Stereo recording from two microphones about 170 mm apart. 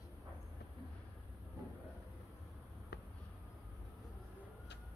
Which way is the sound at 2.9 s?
75° left (ahead or behind).